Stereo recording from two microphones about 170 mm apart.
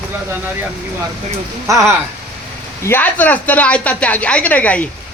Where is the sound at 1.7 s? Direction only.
20° right (ahead or behind).